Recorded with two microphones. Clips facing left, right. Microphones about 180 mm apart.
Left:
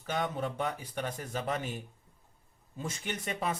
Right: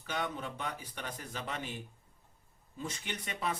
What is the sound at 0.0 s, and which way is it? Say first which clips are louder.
Speech: left 4 dB; 45° left (ahead or behind).